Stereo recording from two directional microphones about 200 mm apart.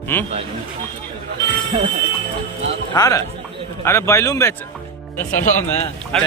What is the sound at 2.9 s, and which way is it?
A man's voice, 15° left (ahead or behind).